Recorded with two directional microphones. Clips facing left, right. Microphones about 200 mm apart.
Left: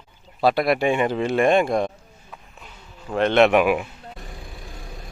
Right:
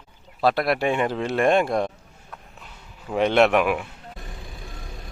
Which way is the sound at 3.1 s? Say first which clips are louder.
Left 1 dB; 10° right (ahead or behind).